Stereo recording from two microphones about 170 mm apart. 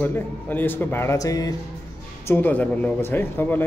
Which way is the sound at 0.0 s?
10° left (ahead or behind).